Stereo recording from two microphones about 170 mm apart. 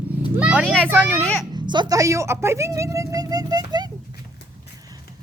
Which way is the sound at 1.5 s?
25° right (ahead or behind).